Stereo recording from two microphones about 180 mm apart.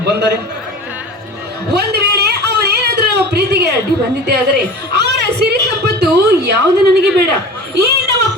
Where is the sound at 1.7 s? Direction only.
60° right (ahead or behind).